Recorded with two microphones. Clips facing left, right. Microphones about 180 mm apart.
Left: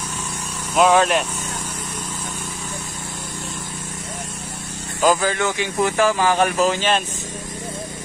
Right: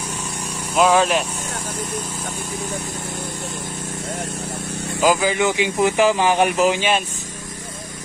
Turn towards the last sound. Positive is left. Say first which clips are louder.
# right 1 dB
turn(degrees=-10)  # may be behind; listen again after turning